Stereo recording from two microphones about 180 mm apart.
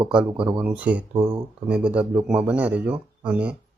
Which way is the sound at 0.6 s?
5° right (ahead or behind).